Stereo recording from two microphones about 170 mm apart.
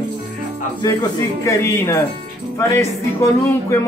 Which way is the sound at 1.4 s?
15° left (ahead or behind).